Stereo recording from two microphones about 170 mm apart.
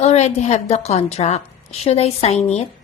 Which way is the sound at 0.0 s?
40° left (ahead or behind).